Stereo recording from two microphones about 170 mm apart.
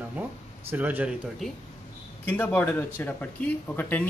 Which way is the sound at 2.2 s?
10° left (ahead or behind).